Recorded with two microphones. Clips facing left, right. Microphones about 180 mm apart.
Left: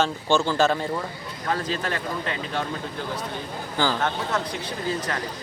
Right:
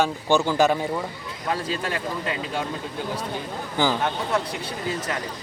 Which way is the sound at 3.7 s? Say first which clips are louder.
Right 1 dB; 15° right (ahead or behind).